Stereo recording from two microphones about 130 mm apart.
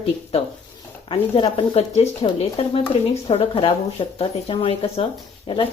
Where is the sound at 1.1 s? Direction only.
45° left (ahead or behind).